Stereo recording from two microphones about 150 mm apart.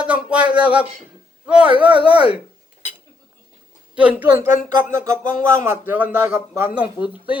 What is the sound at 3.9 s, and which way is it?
Speech, 10° right (ahead or behind).